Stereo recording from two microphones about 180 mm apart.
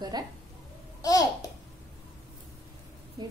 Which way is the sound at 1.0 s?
20° left (ahead or behind).